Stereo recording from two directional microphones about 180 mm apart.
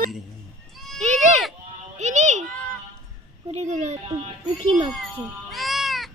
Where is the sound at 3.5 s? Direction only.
35° right (ahead or behind).